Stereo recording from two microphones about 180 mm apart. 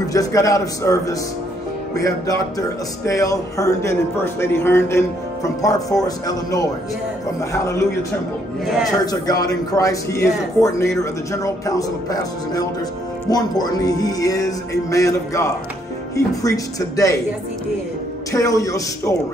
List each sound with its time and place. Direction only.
0.0 s a man's voice: 20° left (ahead or behind)
9.0 s a man's voice: 20° left (ahead or behind)
18.3 s a man's voice: 20° left (ahead or behind)